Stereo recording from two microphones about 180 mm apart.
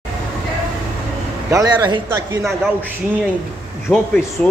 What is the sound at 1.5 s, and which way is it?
Speech, 20° right (ahead or behind).